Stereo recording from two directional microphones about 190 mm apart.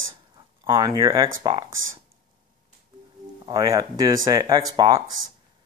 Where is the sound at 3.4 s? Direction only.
20° right (ahead or behind).